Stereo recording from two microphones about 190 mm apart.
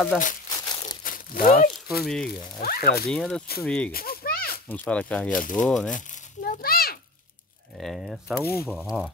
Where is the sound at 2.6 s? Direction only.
50° left (ahead or behind).